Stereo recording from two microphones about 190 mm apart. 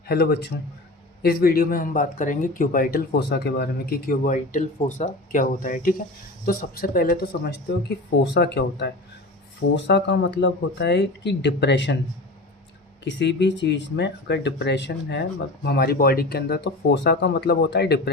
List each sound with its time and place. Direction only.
0.1 s speech: 55° left (ahead or behind)
13.1 s speech: 70° left (ahead or behind)